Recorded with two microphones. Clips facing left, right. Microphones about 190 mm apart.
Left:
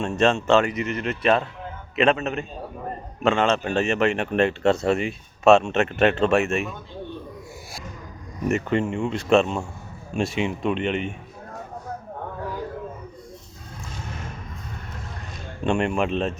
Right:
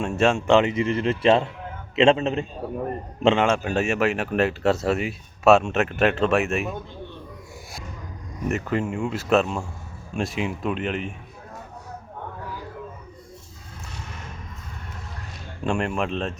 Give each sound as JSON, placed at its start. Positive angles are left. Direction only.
{"t": 0.0, "sound": "speech", "side_deg": -10}
{"t": 0.7, "sound": "speech", "side_deg": -30}
{"t": 3.2, "sound": "speech", "side_deg": -10}
{"t": 8.4, "sound": "speech", "side_deg": 0}
{"t": 15.6, "sound": "speech", "side_deg": 0}